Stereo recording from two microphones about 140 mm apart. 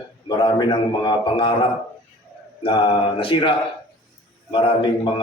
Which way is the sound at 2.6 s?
35° left (ahead or behind).